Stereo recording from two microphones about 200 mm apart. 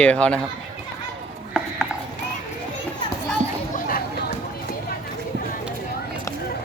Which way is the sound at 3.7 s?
45° left (ahead or behind).